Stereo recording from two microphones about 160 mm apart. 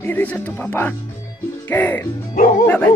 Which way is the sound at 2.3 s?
55° left (ahead or behind).